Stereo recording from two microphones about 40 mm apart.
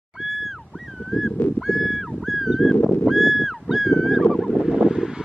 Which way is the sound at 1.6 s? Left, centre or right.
Centre.